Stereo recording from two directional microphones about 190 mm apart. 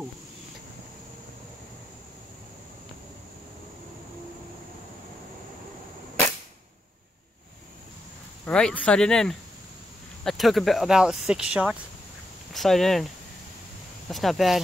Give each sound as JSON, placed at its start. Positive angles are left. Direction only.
{"t": 8.5, "sound": "speech", "side_deg": 5}